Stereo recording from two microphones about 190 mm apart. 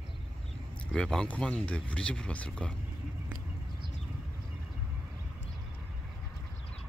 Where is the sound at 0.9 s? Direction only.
5° left (ahead or behind).